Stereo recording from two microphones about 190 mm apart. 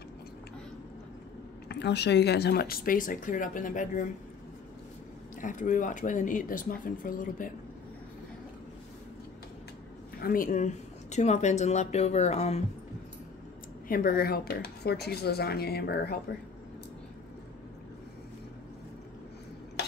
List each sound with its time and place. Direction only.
1.7 s speech: 60° left (ahead or behind); by 4.0 s 45° left (ahead or behind)
5.4 s speech: 40° left (ahead or behind)
10.2 s speech: 45° left (ahead or behind)
13.8 s speech: 50° left (ahead or behind)